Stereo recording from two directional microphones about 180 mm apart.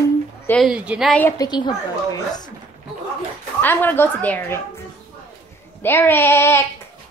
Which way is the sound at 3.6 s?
10° left (ahead or behind).